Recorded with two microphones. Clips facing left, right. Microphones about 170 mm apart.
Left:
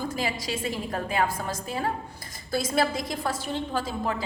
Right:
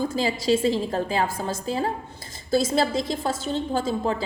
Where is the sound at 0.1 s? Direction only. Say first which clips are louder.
Right 8 dB; 30° right (ahead or behind).